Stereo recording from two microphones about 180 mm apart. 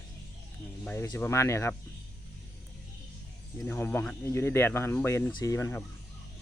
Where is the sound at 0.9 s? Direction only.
15° left (ahead or behind).